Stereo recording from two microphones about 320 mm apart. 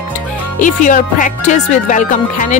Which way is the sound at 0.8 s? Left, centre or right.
Left.